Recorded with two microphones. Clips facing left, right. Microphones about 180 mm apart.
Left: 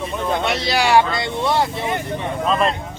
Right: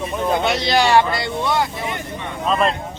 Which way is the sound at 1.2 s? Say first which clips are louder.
Left 1 dB; 30° left (ahead or behind).